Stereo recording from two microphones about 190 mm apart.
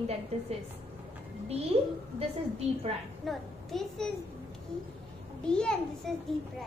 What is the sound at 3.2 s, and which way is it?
Speech, centre (ahead or behind).